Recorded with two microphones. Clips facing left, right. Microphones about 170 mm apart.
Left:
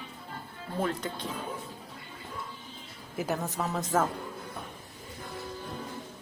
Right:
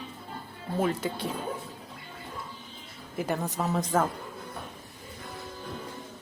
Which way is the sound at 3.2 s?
5° left (ahead or behind).